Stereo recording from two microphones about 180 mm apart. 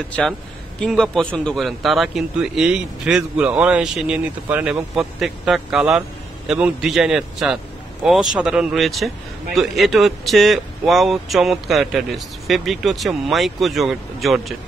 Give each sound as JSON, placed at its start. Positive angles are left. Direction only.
{"t": 0.1, "sound": "a man's voice", "side_deg": 5}